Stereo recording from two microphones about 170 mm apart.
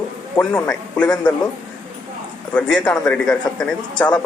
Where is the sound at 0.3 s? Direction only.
10° left (ahead or behind).